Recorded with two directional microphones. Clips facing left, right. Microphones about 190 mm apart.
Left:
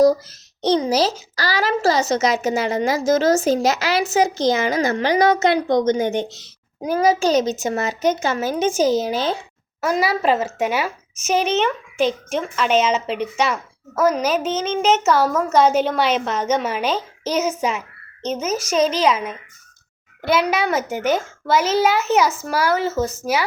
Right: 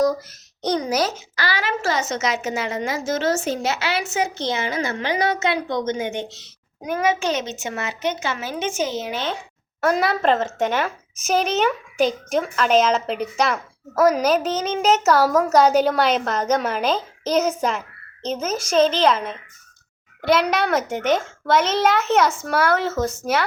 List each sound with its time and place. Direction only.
0.0 s speech: 30° left (ahead or behind)
9.8 s a woman's voice: 5° left (ahead or behind)
18.9 s a woman's voice: 10° left (ahead or behind)